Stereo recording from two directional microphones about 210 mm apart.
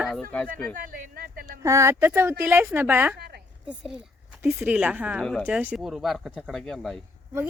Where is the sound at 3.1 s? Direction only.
50° right (ahead or behind).